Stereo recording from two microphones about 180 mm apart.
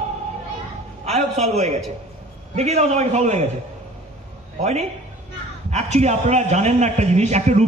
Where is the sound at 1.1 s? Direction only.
35° right (ahead or behind).